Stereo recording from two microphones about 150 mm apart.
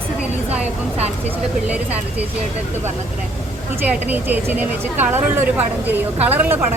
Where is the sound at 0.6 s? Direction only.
45° right (ahead or behind).